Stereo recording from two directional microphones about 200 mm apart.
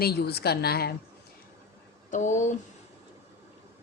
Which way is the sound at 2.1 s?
35° left (ahead or behind).